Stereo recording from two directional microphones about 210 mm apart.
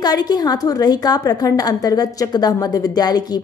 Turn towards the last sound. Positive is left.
turn(degrees=20)  # may be behind; listen again after turning